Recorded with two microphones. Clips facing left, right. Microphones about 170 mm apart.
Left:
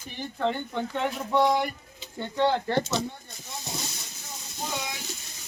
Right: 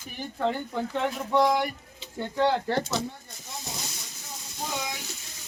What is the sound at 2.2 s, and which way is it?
Speech, 5° right (ahead or behind).